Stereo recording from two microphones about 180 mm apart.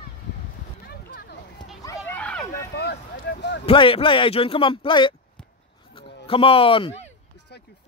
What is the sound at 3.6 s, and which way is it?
Speech, 30° left (ahead or behind).